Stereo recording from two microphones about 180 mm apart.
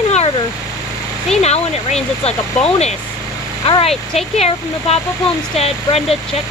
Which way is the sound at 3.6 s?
30° left (ahead or behind).